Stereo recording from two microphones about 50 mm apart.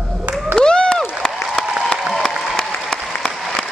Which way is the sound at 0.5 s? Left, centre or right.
Centre.